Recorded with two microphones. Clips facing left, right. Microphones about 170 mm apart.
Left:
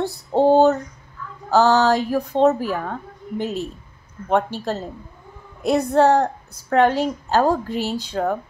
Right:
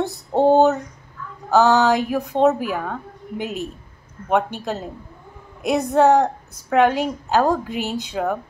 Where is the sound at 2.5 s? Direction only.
15° right (ahead or behind).